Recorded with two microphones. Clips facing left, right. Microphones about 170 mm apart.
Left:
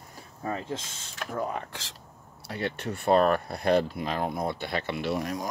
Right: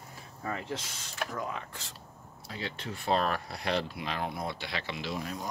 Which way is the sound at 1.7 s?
90° left.